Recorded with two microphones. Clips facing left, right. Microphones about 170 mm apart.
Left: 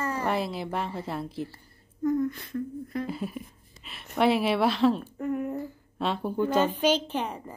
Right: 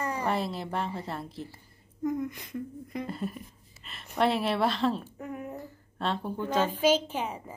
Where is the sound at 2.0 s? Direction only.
15° right (ahead or behind).